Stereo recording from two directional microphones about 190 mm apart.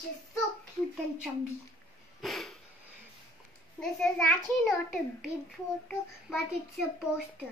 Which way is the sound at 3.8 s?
5° left (ahead or behind).